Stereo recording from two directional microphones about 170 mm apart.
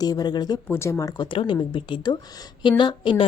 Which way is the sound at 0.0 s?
25° left (ahead or behind).